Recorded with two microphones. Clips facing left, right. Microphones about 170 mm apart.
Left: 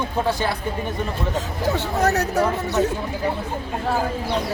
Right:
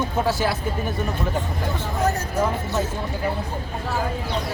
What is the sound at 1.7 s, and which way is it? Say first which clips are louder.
Speech: left 3 dB; 75° left (ahead or behind).